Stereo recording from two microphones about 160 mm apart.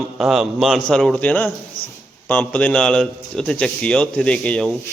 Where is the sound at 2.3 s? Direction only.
10° left (ahead or behind).